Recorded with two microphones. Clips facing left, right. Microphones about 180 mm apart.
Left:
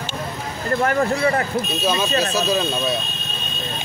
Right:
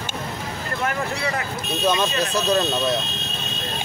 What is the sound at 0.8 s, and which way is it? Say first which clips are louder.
Speech: left 7 dB; 45° left (ahead or behind).